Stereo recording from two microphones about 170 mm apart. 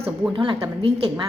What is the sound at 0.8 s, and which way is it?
Speech, 35° right (ahead or behind).